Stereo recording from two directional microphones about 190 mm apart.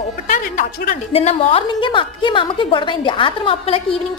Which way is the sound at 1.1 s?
30° left (ahead or behind).